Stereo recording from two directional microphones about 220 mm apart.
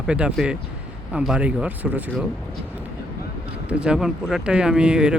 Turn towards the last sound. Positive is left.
turn(degrees=-5)  # may be behind; listen again after turning